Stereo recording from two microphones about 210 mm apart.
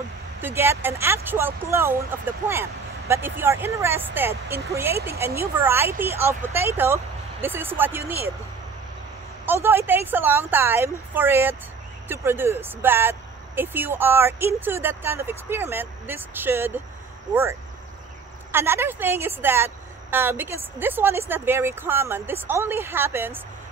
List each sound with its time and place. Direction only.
0.4 s speech: 10° right (ahead or behind)
9.5 s speech: 10° right (ahead or behind)